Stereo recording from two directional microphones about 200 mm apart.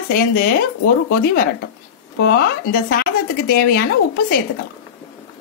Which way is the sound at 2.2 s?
50° left (ahead or behind).